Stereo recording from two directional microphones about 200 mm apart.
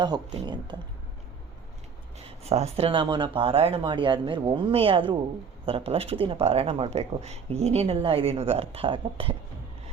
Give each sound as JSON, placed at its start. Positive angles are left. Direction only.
{"t": 0.4, "sound": "speech", "side_deg": -20}
{"t": 2.1, "sound": "speech", "side_deg": -30}